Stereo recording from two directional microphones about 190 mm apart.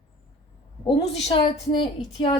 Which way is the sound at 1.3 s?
30° left (ahead or behind).